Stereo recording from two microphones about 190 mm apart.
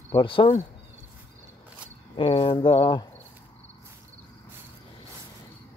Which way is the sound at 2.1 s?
30° left (ahead or behind).